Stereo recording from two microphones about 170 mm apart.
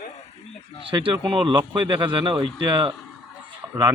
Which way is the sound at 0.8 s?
30° right (ahead or behind).